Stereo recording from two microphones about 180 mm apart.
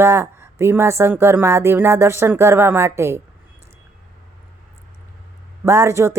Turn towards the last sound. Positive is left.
turn(degrees=-15)  # may be behind; listen again after turning